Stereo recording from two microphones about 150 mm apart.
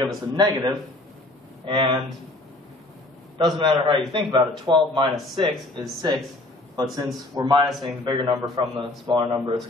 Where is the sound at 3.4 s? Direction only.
30° right (ahead or behind).